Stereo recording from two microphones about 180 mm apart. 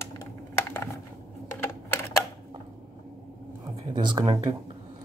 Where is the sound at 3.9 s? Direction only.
25° right (ahead or behind).